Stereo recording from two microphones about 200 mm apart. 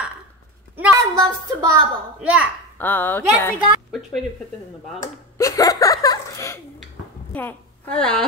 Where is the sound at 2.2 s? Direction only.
5° right (ahead or behind).